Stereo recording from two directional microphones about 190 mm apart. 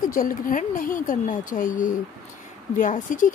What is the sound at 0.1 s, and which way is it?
Speech, 45° left (ahead or behind).